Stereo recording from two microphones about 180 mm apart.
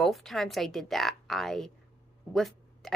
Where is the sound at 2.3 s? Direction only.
Centre (ahead or behind).